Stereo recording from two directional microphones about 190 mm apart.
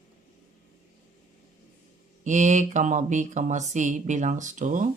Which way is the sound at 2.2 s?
40° right (ahead or behind).